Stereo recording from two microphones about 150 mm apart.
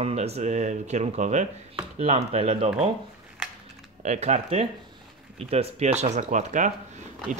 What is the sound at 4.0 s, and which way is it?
Speech, 50° right (ahead or behind).